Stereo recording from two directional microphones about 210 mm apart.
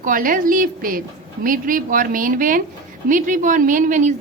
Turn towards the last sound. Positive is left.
turn(degrees=-35)  # may be behind; listen again after turning